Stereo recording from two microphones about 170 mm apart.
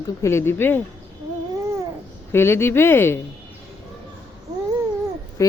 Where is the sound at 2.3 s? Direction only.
15° left (ahead or behind).